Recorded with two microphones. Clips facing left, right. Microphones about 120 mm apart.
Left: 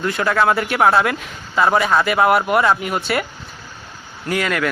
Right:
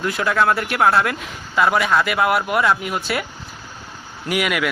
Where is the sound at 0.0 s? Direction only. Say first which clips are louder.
Left 1 dB; centre (ahead or behind).